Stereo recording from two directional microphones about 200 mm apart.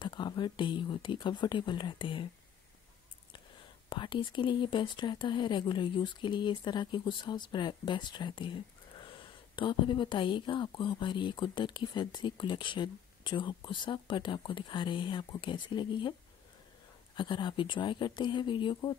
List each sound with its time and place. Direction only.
0.0 s speech: 20° left (ahead or behind)
3.9 s speech: 25° left (ahead or behind)